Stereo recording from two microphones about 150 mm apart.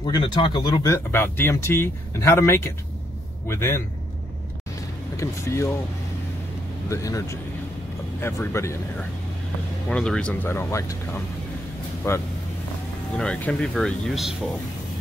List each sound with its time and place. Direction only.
0.0 s speech: 30° left (ahead or behind)
0.8 s speech: 15° left (ahead or behind)
5.1 s speech: 20° left (ahead or behind)
6.9 s speech: 20° left (ahead or behind)
9.8 s speech: 5° left (ahead or behind)
13.2 s speech: 5° left (ahead or behind)